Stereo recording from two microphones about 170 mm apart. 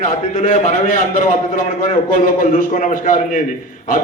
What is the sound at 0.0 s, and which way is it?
A man's voice, 45° left (ahead or behind).